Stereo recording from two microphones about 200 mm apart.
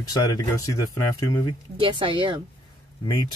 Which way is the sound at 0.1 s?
20° left (ahead or behind).